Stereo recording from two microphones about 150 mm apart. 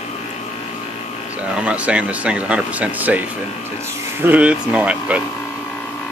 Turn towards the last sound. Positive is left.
turn(degrees=-10)  # may be behind; listen again after turning